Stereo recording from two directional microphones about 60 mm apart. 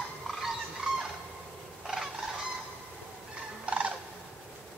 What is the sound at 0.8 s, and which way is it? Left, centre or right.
Fowl, centre.